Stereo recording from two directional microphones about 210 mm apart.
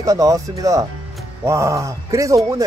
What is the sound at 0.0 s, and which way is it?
Speech, 15° right (ahead or behind).